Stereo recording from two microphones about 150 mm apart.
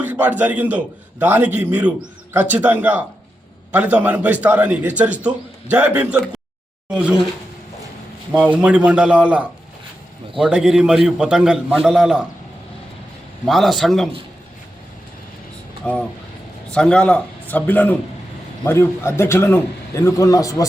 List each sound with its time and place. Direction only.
0.0 s a man's voice: 10° right (ahead or behind)
8.3 s a man's voice: 10° right (ahead or behind)
13.5 s a man's voice: centre (ahead or behind)
15.8 s a man's voice: 5° left (ahead or behind)